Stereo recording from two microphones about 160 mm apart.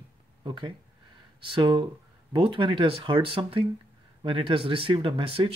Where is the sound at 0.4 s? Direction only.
30° right (ahead or behind).